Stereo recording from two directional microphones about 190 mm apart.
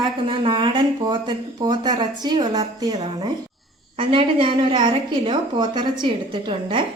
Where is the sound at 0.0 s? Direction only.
30° right (ahead or behind).